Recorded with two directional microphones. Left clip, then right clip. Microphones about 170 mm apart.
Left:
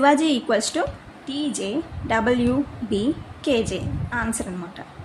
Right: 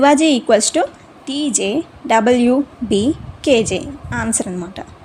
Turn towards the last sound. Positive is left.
turn(degrees=-40)  # may be behind; listen again after turning